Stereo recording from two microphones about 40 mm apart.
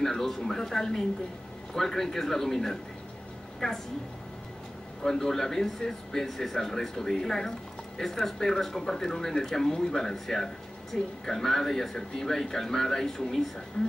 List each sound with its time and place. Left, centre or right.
0.0 s a woman's voice: centre
5.0 s speech: centre